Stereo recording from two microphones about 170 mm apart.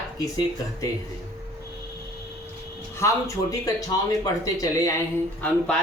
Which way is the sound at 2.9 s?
15° left (ahead or behind).